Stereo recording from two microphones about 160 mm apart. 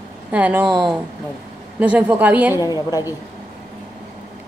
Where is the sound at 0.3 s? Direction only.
10° right (ahead or behind).